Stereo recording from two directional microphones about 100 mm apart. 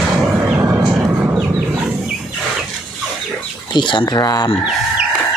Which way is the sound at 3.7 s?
50° left (ahead or behind).